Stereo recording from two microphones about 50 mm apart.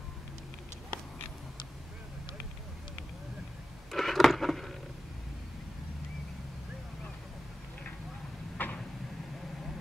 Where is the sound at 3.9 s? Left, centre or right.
Centre.